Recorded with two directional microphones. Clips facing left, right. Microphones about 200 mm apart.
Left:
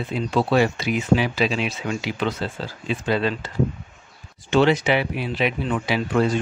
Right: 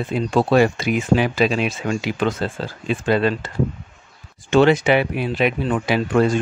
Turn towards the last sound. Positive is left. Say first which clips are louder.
# right 3 dB
turn(degrees=-50)  # may be behind; listen again after turning